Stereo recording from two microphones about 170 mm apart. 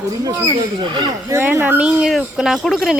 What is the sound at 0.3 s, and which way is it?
Speech, 15° right (ahead or behind).